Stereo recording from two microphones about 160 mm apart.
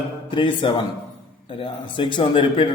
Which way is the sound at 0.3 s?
30° left (ahead or behind).